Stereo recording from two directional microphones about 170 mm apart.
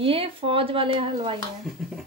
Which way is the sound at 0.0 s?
35° right (ahead or behind).